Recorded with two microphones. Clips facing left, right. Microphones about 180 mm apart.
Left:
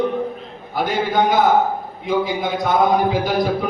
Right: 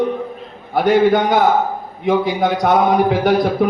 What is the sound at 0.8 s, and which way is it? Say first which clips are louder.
A man's voice: right 6 dB; 70° right (ahead or behind).